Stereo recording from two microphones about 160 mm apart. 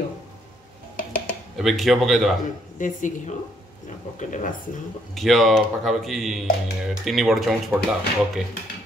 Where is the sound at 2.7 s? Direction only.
55° left (ahead or behind).